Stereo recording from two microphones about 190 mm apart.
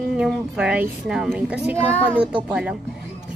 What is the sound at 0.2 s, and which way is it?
A woman's voice, 5° right (ahead or behind).